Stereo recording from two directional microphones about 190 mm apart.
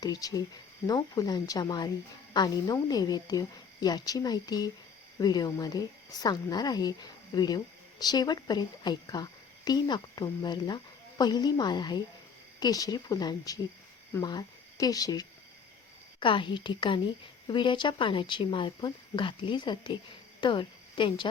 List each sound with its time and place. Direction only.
0.0 s a woman's voice: 20° left (ahead or behind)